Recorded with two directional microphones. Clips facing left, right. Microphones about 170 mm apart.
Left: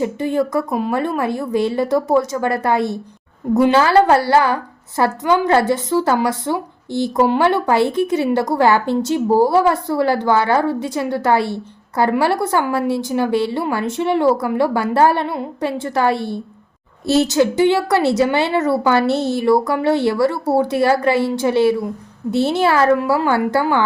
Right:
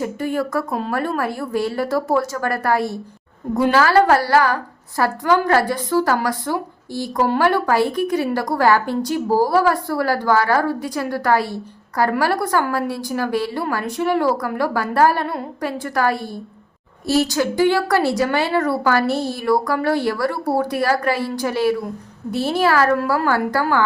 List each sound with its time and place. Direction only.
0.0 s a woman's voice: 20° left (ahead or behind)